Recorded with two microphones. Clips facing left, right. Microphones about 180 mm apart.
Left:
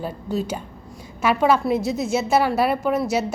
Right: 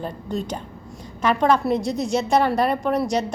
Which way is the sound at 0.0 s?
5° left (ahead or behind).